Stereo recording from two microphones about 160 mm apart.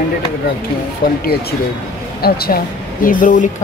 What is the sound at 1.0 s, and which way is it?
Speech, 65° left (ahead or behind).